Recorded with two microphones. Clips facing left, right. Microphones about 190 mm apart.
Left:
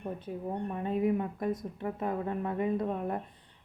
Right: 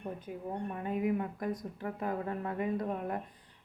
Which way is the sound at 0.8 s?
25° left (ahead or behind).